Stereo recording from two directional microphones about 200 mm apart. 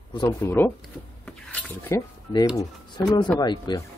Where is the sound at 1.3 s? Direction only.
5° left (ahead or behind).